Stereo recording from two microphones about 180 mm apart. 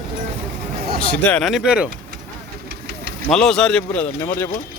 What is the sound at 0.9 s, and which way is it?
Speech, 5° left (ahead or behind).